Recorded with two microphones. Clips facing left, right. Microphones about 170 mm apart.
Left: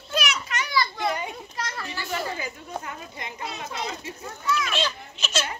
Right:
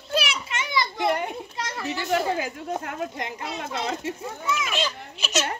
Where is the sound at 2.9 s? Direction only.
75° right (ahead or behind).